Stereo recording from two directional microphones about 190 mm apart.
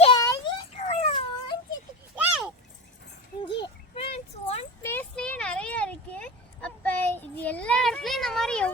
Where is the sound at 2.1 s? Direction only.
5° right (ahead or behind).